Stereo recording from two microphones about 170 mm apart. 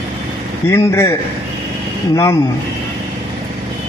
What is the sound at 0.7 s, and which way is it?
Speech, 15° left (ahead or behind).